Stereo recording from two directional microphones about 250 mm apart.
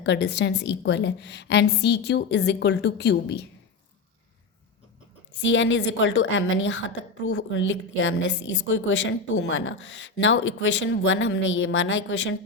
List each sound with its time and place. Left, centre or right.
0.0 s a woman's voice: left
5.4 s a woman's voice: left